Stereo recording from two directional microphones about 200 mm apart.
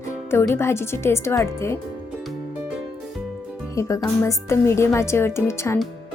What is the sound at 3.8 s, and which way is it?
A woman's voice, 15° left (ahead or behind).